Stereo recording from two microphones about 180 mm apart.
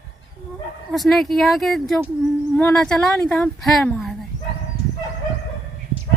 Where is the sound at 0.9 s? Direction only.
Centre (ahead or behind).